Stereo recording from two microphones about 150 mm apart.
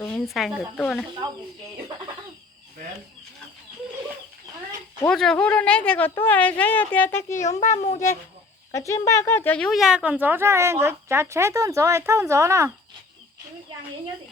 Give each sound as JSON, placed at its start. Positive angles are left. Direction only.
{"t": 0.0, "sound": "speech", "side_deg": 0}
{"t": 5.0, "sound": "speech", "side_deg": 5}
{"t": 7.3, "sound": "a child's voice", "side_deg": 55}
{"t": 8.7, "sound": "speech", "side_deg": 20}